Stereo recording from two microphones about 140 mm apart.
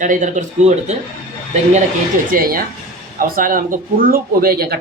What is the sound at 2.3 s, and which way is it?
Speech, 90° right.